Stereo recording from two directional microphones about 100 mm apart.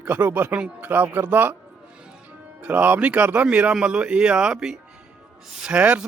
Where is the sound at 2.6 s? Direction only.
15° right (ahead or behind).